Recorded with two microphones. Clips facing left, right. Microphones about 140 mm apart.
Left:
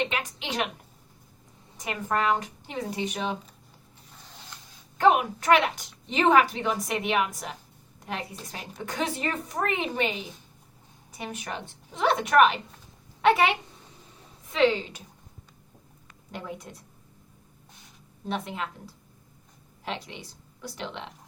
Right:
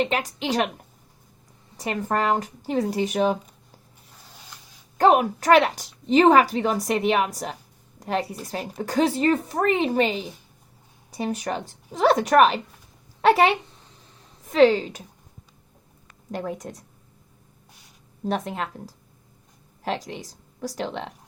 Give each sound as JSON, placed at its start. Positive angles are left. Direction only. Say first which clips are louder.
{"t": 0.0, "sound": "a woman's voice", "louder": "right 6 dB", "side_deg": -35}
{"t": 1.8, "sound": "a woman's voice", "louder": "right 3 dB", "side_deg": -35}
{"t": 4.9, "sound": "a woman's voice", "louder": "right 4 dB", "side_deg": -40}
{"t": 16.3, "sound": "a woman's voice", "louder": "right 7 dB", "side_deg": -40}
{"t": 18.3, "sound": "a woman's voice", "louder": "right 5 dB", "side_deg": -40}